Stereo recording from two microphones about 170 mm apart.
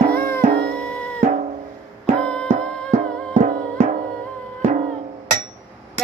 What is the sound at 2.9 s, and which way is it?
Music, 45° right (ahead or behind).